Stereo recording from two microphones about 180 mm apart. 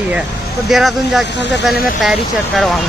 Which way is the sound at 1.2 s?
75° left (ahead or behind).